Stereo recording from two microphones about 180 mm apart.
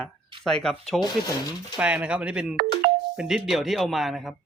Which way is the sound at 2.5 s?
55° right (ahead or behind).